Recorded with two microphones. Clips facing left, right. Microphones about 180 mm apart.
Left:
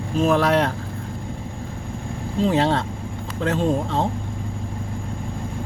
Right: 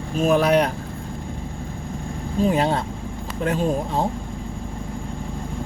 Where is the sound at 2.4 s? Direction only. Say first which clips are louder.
Left 1 dB; 15° right (ahead or behind).